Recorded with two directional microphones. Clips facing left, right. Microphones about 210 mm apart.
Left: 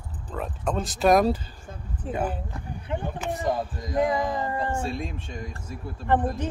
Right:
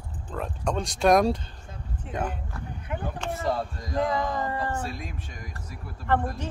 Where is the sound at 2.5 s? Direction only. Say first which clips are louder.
Left 3 dB; 25° left (ahead or behind).